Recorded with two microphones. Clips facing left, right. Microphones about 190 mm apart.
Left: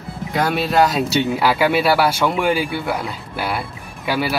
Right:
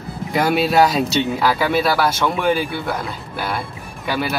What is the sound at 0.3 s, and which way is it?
Speech, 10° right (ahead or behind).